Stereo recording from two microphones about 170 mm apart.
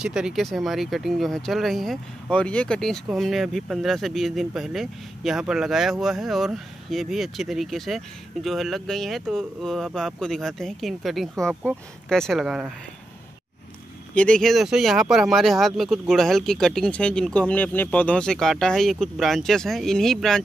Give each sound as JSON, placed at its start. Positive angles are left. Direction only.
{"t": 0.0, "sound": "speech", "side_deg": -5}
{"t": 14.1, "sound": "speech", "side_deg": 5}